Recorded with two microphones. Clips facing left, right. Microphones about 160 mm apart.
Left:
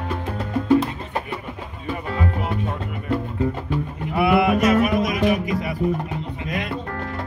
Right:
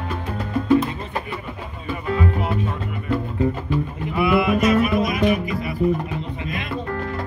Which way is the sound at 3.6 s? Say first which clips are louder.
Right 2 dB; 60° left (ahead or behind).